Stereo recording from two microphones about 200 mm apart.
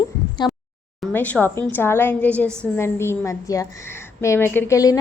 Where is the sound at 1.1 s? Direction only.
10° left (ahead or behind).